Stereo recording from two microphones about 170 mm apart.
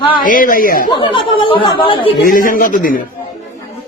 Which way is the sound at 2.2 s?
55° left (ahead or behind).